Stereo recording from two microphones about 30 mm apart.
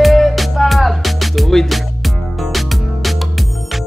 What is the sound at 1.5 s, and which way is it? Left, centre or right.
Music, centre.